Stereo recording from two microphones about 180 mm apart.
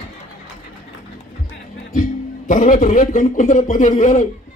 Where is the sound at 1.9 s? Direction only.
45° left (ahead or behind).